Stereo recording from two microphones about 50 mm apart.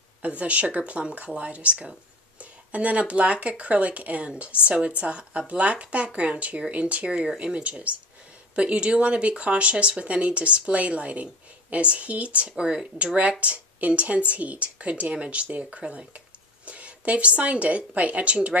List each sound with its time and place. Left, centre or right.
0.4 s speech: right
13.0 s speech: right
15.8 s a woman's voice: centre